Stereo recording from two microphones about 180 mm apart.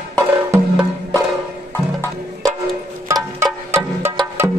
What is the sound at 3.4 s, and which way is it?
Music, 15° right (ahead or behind).